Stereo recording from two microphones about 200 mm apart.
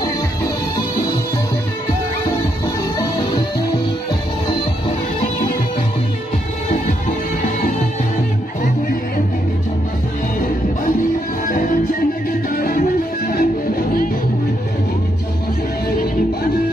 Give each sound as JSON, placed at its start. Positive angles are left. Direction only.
{"t": 11.4, "sound": "music", "side_deg": 40}